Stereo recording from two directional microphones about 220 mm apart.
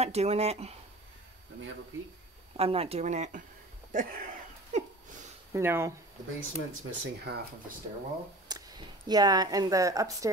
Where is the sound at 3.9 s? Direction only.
40° right (ahead or behind).